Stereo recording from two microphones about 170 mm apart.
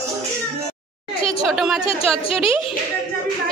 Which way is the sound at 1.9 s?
35° left (ahead or behind).